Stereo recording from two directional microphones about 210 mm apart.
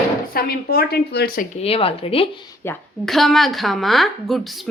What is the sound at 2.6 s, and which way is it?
A woman's voice, 5° left (ahead or behind).